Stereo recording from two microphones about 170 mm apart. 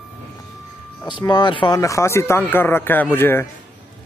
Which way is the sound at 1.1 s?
25° left (ahead or behind).